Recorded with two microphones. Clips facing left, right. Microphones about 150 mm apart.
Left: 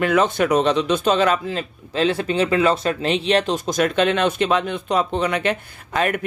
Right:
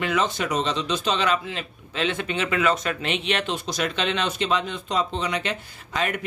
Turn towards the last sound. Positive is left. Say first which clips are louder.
# left 5 dB
turn(degrees=50)  # may be behind; listen again after turning